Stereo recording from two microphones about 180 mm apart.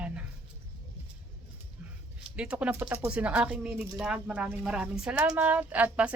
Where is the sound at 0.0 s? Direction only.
5° right (ahead or behind).